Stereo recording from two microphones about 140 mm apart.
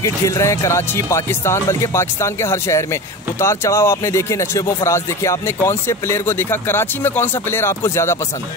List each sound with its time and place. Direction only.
0.0 s speech: 20° left (ahead or behind)